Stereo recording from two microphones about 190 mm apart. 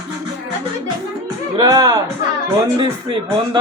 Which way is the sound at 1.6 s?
20° right (ahead or behind).